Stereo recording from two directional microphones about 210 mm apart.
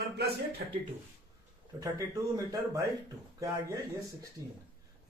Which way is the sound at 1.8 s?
15° right (ahead or behind).